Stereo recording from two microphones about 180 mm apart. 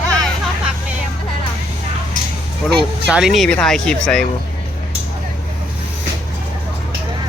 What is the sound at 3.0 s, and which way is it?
Speech, 5° right (ahead or behind).